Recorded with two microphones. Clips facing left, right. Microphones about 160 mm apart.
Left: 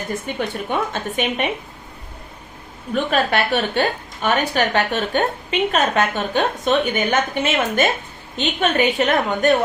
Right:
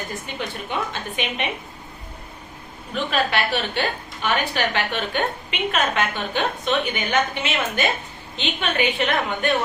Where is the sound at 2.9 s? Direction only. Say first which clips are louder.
Left 4 dB; 45° left (ahead or behind).